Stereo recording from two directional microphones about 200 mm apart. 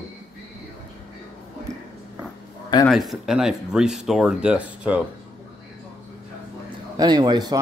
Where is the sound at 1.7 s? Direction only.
35° right (ahead or behind).